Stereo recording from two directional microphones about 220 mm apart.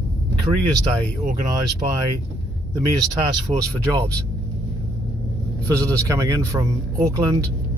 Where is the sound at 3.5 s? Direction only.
25° right (ahead or behind).